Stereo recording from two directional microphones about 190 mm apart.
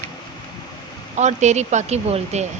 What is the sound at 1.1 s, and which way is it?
A woman's voice, 40° right (ahead or behind).